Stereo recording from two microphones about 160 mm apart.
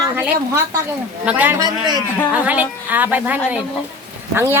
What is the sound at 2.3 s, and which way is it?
A child's voice, 10° right (ahead or behind).